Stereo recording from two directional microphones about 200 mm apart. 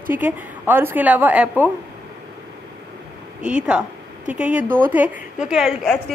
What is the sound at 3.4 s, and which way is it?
A woman's voice, 5° right (ahead or behind).